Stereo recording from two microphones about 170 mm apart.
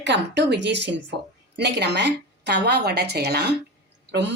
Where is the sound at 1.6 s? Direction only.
80° right.